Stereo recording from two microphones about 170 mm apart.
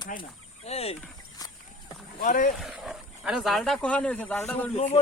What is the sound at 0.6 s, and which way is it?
Speech, 35° left (ahead or behind).